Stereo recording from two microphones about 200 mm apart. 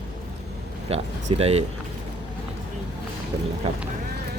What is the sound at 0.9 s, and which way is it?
Speech, 30° right (ahead or behind).